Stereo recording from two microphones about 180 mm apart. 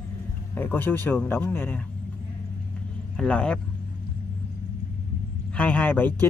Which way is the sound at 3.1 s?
5° left (ahead or behind).